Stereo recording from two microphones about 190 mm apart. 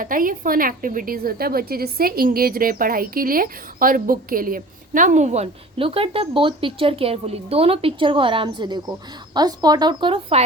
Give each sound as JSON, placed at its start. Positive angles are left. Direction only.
{"t": 0.0, "sound": "a woman's voice", "side_deg": -45}